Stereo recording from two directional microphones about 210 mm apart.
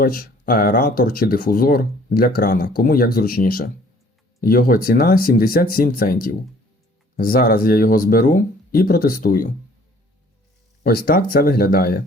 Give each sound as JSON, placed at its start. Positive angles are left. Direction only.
{"t": 0.0, "sound": "speech", "side_deg": 45}
{"t": 10.8, "sound": "speech", "side_deg": 45}